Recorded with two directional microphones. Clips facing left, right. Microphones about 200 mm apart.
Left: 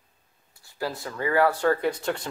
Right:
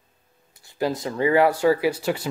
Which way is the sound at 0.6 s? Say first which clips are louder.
Right 7 dB; 20° right (ahead or behind).